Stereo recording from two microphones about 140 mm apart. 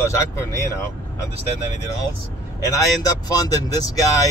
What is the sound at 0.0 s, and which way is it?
Speech, 20° left (ahead or behind).